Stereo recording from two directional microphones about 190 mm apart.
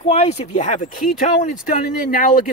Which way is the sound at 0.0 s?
30° left (ahead or behind).